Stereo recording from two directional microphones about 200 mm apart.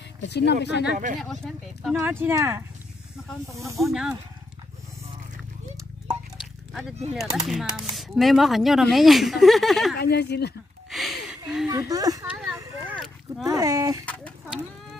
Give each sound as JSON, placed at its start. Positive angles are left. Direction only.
{"t": 0.2, "sound": "speech", "side_deg": 60}
{"t": 1.2, "sound": "speech", "side_deg": 0}
{"t": 2.0, "sound": "speech", "side_deg": -10}
{"t": 3.8, "sound": "speech", "side_deg": -5}
{"t": 6.7, "sound": "speech", "side_deg": 0}
{"t": 9.9, "sound": "speech", "side_deg": 55}
{"t": 10.9, "sound": "a sound", "side_deg": 0}
{"t": 11.7, "sound": "speech", "side_deg": -20}
{"t": 12.3, "sound": "a sound", "side_deg": 0}
{"t": 13.5, "sound": "speech", "side_deg": -20}
{"t": 14.0, "sound": "a sound", "side_deg": 5}